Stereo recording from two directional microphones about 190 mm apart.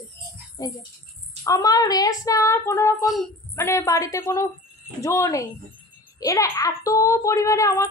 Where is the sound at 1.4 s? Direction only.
20° left (ahead or behind).